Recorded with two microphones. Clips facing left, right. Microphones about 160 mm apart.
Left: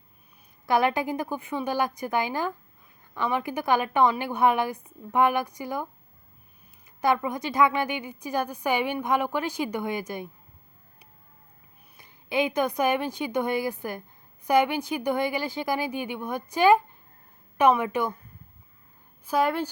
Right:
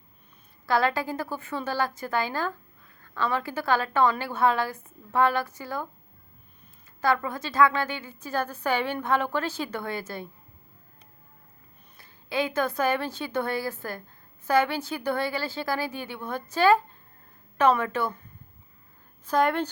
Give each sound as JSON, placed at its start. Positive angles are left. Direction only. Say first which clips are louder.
{"t": 0.6, "sound": "a woman's voice", "louder": "left 1 dB", "side_deg": 20}
{"t": 7.0, "sound": "a woman's voice", "louder": "left 1 dB", "side_deg": 15}
{"t": 11.9, "sound": "a woman's voice", "louder": "left 2 dB", "side_deg": 20}
{"t": 19.2, "sound": "a woman's voice", "louder": "right 1 dB", "side_deg": 5}